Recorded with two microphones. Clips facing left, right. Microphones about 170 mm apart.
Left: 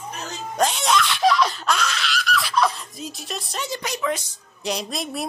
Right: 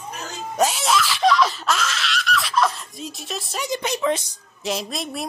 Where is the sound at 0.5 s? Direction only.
5° right (ahead or behind).